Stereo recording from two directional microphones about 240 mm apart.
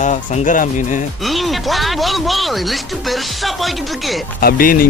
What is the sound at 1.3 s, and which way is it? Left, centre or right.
Speech, centre.